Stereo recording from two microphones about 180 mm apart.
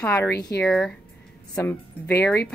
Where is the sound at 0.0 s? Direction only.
10° left (ahead or behind).